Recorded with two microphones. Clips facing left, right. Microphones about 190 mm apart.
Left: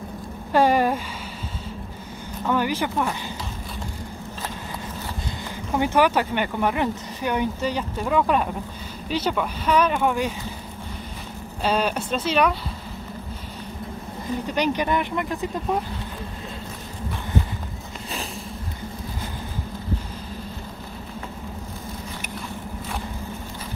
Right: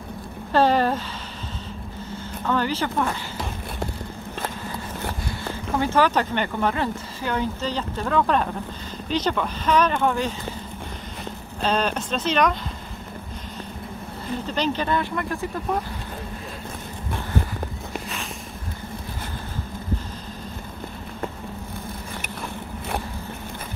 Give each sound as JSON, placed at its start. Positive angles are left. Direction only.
{"t": 0.5, "sound": "speech", "side_deg": 10}
{"t": 2.4, "sound": "speech", "side_deg": 10}
{"t": 5.4, "sound": "speech", "side_deg": 15}
{"t": 11.6, "sound": "speech", "side_deg": 10}
{"t": 14.4, "sound": "speech", "side_deg": 15}